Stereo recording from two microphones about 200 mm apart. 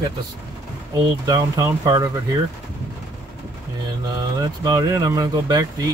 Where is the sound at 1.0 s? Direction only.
15° right (ahead or behind).